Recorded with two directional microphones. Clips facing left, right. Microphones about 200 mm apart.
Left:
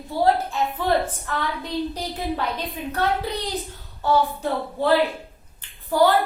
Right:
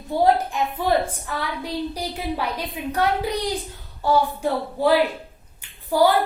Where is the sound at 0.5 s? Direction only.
10° right (ahead or behind).